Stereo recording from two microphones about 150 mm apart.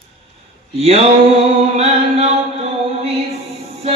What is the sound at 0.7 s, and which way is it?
Mantra, 45° right (ahead or behind).